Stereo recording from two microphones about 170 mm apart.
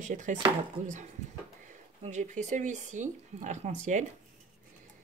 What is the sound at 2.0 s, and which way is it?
Speech, 45° right (ahead or behind).